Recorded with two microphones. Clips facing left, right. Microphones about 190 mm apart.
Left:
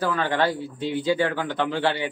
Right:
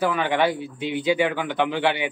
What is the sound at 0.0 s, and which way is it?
Speech, 15° right (ahead or behind).